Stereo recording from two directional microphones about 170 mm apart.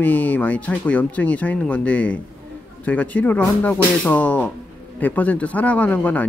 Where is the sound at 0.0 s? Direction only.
10° left (ahead or behind).